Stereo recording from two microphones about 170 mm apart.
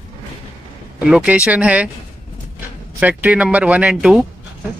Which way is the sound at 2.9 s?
10° right (ahead or behind).